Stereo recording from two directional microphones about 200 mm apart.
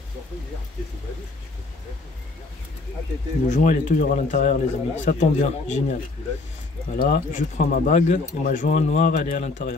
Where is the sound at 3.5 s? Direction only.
40° left (ahead or behind).